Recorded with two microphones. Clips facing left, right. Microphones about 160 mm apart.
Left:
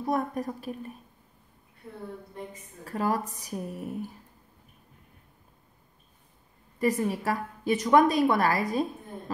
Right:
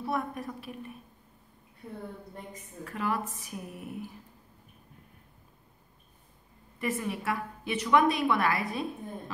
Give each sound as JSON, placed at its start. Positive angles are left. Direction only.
{"t": 0.0, "sound": "a woman's voice", "side_deg": 40}
{"t": 2.8, "sound": "a woman's voice", "side_deg": 35}
{"t": 6.8, "sound": "a woman's voice", "side_deg": 35}